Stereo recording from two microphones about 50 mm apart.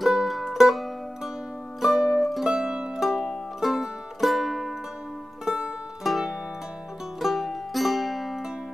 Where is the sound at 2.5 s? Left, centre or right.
Centre.